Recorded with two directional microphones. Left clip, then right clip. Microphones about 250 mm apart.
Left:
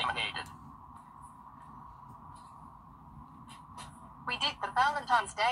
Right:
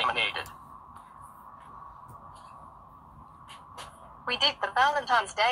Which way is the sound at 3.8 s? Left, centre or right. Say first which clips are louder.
Right 4 dB; right.